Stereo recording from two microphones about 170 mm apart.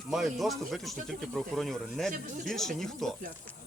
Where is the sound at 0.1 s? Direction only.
Centre (ahead or behind).